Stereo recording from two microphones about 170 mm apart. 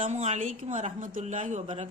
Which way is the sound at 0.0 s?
45° right (ahead or behind).